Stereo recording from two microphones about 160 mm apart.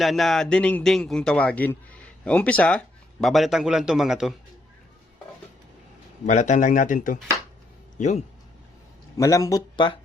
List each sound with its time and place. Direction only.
0.0 s a man's voice: centre (ahead or behind)
6.2 s speech: 50° left (ahead or behind)
9.1 s a man's voice: 20° left (ahead or behind)